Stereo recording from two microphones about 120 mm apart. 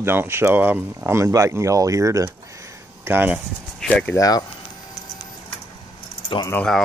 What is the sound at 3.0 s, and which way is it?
Speech, 15° right (ahead or behind).